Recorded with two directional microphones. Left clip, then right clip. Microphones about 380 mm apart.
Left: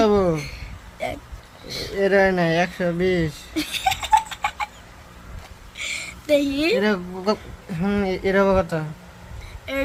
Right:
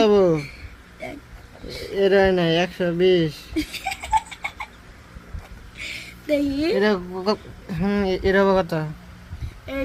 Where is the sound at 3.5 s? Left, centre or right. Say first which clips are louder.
Left 4 dB; left.